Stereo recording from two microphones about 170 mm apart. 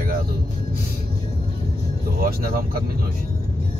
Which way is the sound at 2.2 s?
60° right (ahead or behind).